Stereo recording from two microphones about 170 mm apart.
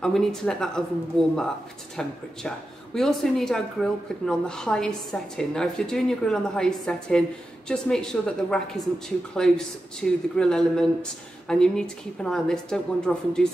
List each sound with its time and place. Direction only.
0.0 s speech: 5° left (ahead or behind)